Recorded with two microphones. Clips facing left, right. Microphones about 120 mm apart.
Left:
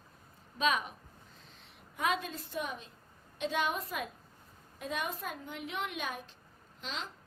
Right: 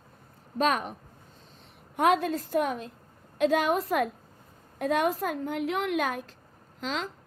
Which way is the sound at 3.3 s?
85° right.